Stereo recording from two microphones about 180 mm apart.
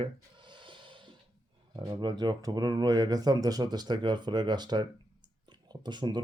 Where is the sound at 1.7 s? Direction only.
25° right (ahead or behind).